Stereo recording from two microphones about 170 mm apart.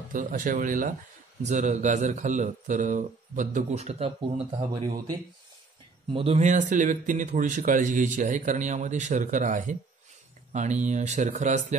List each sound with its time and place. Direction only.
0.1 s a man's voice: 50° right (ahead or behind); by 4.6 s 30° right (ahead or behind)
6.1 s a man's voice: 35° right (ahead or behind)